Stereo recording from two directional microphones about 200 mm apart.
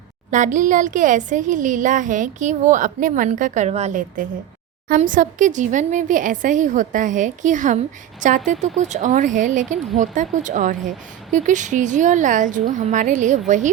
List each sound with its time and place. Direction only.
0.3 s speech: 40° right (ahead or behind)